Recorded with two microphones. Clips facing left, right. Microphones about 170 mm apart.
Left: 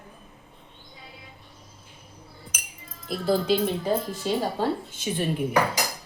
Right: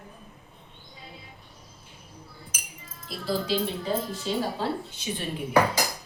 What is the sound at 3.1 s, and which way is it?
Speech, 55° left (ahead or behind).